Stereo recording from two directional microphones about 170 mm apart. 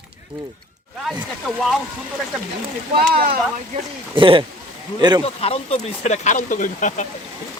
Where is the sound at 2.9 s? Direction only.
60° right (ahead or behind).